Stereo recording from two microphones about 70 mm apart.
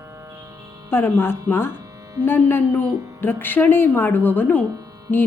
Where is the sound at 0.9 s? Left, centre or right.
Left.